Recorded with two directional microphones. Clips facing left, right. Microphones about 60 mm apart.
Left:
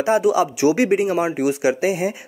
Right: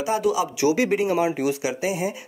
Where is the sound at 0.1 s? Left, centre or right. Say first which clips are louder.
Left 5 dB; left.